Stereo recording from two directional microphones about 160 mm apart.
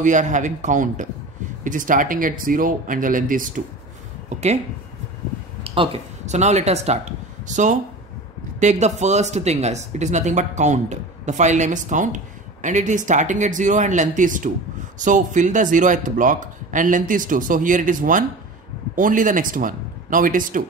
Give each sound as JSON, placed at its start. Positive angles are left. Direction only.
{"t": 0.0, "sound": "speech", "side_deg": -50}
{"t": 4.3, "sound": "speech", "side_deg": -45}
{"t": 5.6, "sound": "speech", "side_deg": -40}